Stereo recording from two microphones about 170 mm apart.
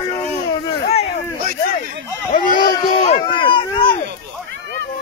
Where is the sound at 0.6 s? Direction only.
35° left (ahead or behind).